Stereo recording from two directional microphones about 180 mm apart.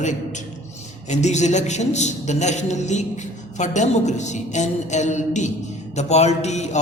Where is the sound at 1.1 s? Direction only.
40° left (ahead or behind).